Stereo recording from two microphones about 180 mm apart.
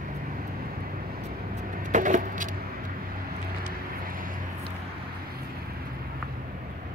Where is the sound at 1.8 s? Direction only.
45° right (ahead or behind).